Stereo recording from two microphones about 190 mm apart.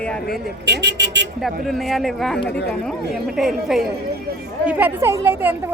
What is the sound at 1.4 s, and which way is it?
Speech, centre (ahead or behind).